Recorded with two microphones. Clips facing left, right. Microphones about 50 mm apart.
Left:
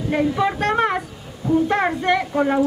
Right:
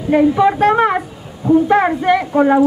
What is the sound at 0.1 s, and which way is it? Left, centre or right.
Speech, centre.